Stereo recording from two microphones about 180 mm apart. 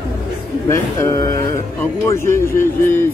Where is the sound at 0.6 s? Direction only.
20° left (ahead or behind).